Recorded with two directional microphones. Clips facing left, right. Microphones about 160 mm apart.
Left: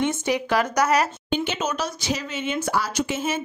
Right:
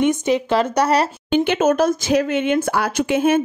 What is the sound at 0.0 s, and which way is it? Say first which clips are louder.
Speech: right 6 dB; 20° right (ahead or behind).